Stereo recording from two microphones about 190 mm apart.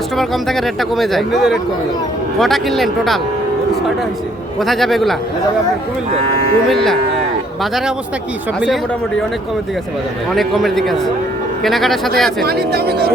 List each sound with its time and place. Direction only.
0.2 s speech: centre (ahead or behind)
4.6 s speech: centre (ahead or behind)
6.7 s speech: centre (ahead or behind)
8.6 s speech: centre (ahead or behind)
10.3 s speech: centre (ahead or behind)
12.4 s speech: 55° right (ahead or behind)